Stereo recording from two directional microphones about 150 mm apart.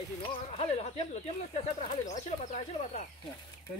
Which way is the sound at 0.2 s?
40° left (ahead or behind).